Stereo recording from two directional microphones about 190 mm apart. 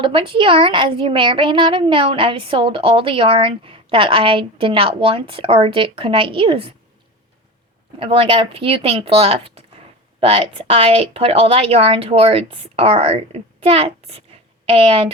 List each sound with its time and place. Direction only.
0.0 s a woman's voice: 25° right (ahead or behind)
7.9 s a woman's voice: 30° right (ahead or behind)